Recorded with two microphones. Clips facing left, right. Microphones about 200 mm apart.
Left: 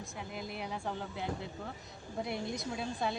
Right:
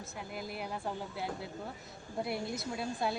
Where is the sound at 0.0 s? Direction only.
5° right (ahead or behind).